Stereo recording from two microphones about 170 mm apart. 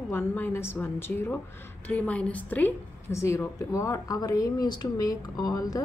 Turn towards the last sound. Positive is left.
turn(degrees=20)  # may be behind; listen again after turning